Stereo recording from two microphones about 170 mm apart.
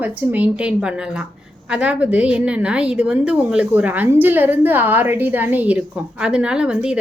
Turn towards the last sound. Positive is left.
turn(degrees=-5)  # may be behind; listen again after turning